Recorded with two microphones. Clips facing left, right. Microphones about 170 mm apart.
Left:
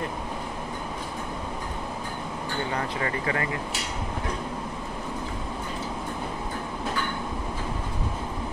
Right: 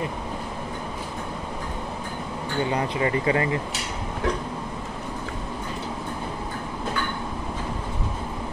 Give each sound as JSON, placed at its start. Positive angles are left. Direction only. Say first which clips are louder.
{"t": 2.7, "sound": "speech", "louder": "right 6 dB", "side_deg": -20}